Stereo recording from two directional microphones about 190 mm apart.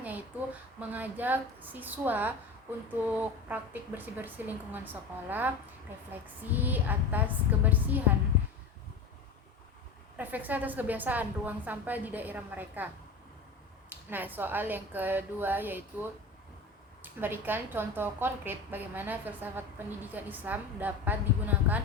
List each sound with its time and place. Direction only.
0.8 s a woman's voice: 10° right (ahead or behind)
10.2 s a woman's voice: 10° right (ahead or behind)
13.9 s a woman's voice: 10° right (ahead or behind)